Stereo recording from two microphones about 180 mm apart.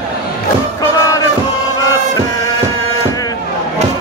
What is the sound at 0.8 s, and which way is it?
Crowd, 20° left (ahead or behind).